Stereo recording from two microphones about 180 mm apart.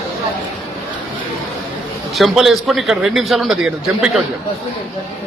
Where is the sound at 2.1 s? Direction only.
Centre (ahead or behind).